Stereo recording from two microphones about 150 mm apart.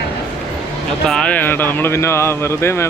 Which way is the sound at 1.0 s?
5° left (ahead or behind).